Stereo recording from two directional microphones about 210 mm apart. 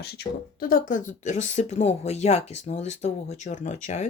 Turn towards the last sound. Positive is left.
turn(degrees=35)  # may be behind; listen again after turning